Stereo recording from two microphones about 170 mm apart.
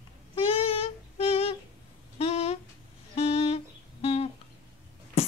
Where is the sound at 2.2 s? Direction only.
40° left (ahead or behind).